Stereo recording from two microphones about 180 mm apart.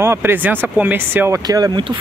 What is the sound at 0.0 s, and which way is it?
Speech, 15° right (ahead or behind).